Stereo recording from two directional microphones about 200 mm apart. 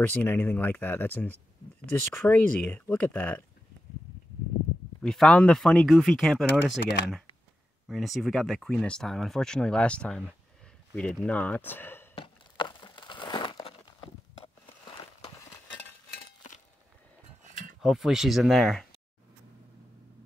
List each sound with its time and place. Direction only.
0.1 s speech: 10° left (ahead or behind)
5.0 s speech: 5° left (ahead or behind)
7.9 s speech: centre (ahead or behind)
12.2 s a sound: 25° left (ahead or behind)
17.8 s speech: centre (ahead or behind)